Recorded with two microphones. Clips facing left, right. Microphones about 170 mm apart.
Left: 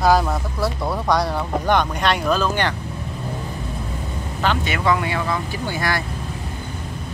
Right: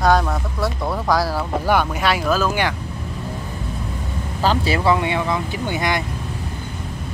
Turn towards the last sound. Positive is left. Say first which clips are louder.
# right 2 dB
turn(degrees=-20)  # may be behind; listen again after turning